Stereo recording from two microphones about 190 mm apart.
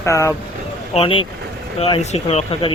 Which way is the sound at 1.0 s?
30° left (ahead or behind).